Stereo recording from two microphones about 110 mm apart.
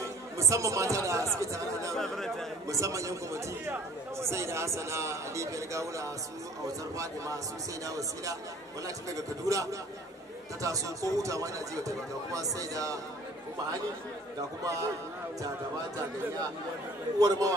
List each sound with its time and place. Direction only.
0.0 s speech: 25° right (ahead or behind)
2.0 s speech: 5° left (ahead or behind)
2.7 s a man's voice: 30° right (ahead or behind)
7.8 s speech: 30° right (ahead or behind)
14.6 s a man's voice: 30° right (ahead or behind)
17.2 s speech: 30° right (ahead or behind)